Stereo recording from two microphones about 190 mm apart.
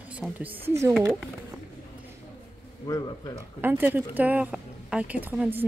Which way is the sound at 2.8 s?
20° left (ahead or behind).